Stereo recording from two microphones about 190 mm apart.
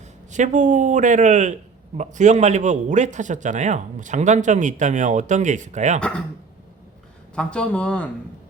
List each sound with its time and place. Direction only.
0.3 s a man's voice: 40° right (ahead or behind)
6.0 s speech: 5° left (ahead or behind)
7.3 s speech: 5° left (ahead or behind)